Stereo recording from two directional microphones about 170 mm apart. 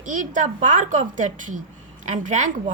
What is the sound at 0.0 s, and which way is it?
Speech, 50° right (ahead or behind).